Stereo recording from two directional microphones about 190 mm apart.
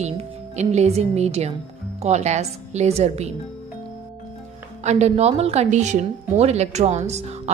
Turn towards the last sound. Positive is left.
turn(degrees=-35)  # may be behind; listen again after turning